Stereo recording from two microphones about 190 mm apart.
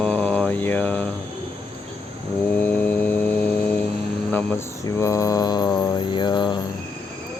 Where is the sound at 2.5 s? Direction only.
10° left (ahead or behind).